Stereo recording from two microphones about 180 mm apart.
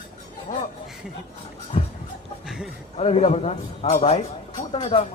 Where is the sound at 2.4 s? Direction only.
Centre (ahead or behind).